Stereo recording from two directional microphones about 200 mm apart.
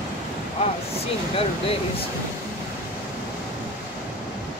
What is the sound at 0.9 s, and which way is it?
Speech, 30° left (ahead or behind).